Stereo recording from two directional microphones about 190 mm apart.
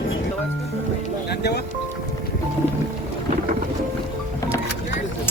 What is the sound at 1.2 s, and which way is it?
Music, 60° left (ahead or behind).